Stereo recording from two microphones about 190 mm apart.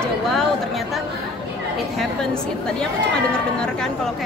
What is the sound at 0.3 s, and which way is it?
Chatter, centre (ahead or behind).